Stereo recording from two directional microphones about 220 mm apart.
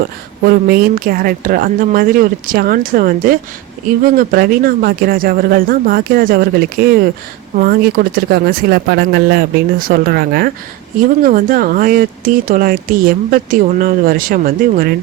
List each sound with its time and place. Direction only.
0.4 s speech: 40° right (ahead or behind)